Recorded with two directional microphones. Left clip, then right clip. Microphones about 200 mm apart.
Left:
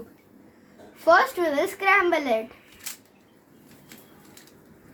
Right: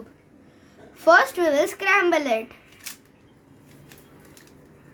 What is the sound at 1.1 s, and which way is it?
A child's voice, 25° right (ahead or behind).